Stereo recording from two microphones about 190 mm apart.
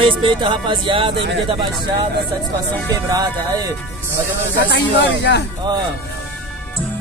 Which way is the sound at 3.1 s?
20° right (ahead or behind).